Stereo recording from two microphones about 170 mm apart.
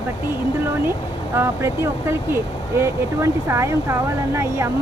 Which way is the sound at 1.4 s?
15° right (ahead or behind).